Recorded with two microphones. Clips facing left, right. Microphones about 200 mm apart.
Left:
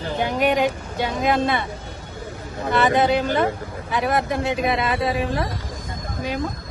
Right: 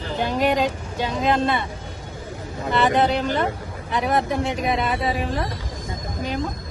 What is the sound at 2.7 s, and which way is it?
Speech, 10° left (ahead or behind).